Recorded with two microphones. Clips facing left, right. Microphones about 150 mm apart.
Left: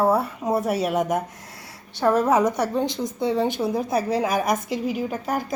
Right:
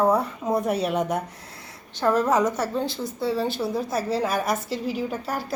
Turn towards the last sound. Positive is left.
turn(degrees=10)  # may be behind; listen again after turning